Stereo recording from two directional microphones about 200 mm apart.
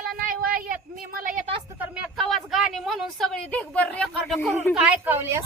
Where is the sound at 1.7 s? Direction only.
5° right (ahead or behind).